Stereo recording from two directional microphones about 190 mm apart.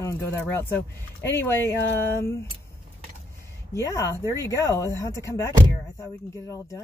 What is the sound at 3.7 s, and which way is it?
Speech, 15° left (ahead or behind).